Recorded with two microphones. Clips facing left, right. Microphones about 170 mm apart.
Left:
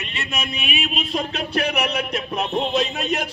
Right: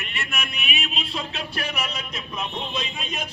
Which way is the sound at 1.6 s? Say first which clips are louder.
Left 9 dB; 65° left (ahead or behind).